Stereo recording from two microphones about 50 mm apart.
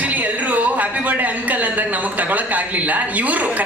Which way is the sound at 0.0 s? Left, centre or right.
Right.